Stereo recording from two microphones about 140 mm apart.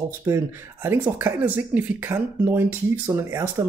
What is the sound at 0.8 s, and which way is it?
Speech, 15° right (ahead or behind).